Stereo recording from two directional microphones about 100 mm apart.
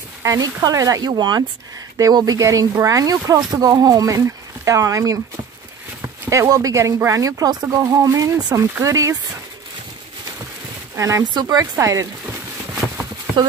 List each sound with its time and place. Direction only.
0.2 s speech: 35° right (ahead or behind)
6.3 s speech: 35° right (ahead or behind)
7.6 s speech: 25° right (ahead or behind)
8.0 s speech: 35° right (ahead or behind)
11.0 s speech: 30° right (ahead or behind)
11.2 s speech: 45° right (ahead or behind)
12.8 s a sound: centre (ahead or behind)